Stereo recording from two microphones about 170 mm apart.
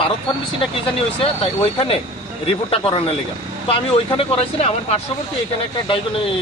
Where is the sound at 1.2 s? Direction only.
35° left (ahead or behind).